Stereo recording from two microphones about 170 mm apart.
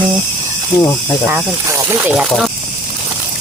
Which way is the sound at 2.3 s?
Centre (ahead or behind).